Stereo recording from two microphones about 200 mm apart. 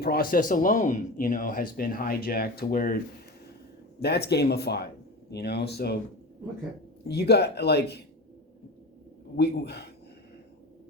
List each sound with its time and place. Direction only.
0.0 s speech: 50° left (ahead or behind)
4.0 s speech: 55° left (ahead or behind)
7.1 s speech: 55° left (ahead or behind)
9.3 s speech: 55° left (ahead or behind)